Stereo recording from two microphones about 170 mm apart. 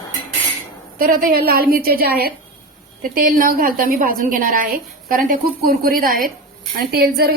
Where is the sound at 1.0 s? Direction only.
55° right (ahead or behind).